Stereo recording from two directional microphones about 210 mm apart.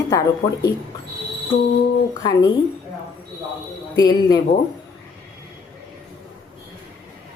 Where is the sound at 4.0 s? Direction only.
20° left (ahead or behind).